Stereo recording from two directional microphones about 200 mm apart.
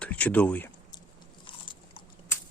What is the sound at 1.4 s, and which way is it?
Biting, 25° left (ahead or behind).